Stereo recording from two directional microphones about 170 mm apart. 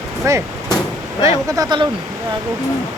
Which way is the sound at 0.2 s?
20° right (ahead or behind).